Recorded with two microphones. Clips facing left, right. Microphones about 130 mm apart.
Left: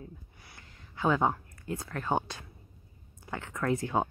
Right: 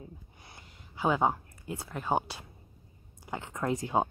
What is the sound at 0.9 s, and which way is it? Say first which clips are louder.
Speech: even; 15° right (ahead or behind).